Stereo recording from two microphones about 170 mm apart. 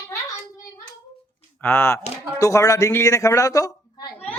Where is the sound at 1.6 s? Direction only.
15° left (ahead or behind).